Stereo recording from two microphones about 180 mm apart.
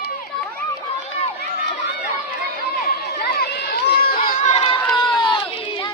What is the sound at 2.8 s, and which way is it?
Crowd, 60° left (ahead or behind).